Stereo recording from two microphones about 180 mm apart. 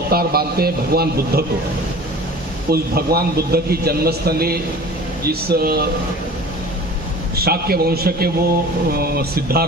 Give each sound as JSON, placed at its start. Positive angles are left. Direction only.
{"t": 0.1, "sound": "a man's voice", "side_deg": -60}
{"t": 2.6, "sound": "a man's voice", "side_deg": -60}
{"t": 7.4, "sound": "a man's voice", "side_deg": -60}